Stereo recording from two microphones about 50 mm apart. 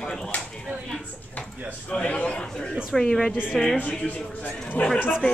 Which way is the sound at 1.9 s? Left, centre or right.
Left.